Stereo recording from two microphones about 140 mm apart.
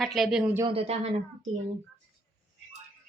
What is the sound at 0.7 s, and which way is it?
Speech, 45° right (ahead or behind).